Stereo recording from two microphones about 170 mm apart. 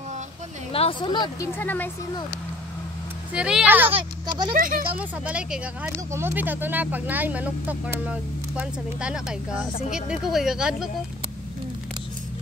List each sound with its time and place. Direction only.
0.7 s speech: 30° left (ahead or behind)
1.5 s speech: 10° left (ahead or behind)
3.3 s speech: 5° right (ahead or behind)
4.6 s speech: 55° right (ahead or behind)
4.9 s speech: 10° right (ahead or behind)